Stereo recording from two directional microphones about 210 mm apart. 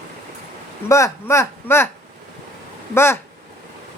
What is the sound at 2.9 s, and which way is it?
Speech, 10° left (ahead or behind).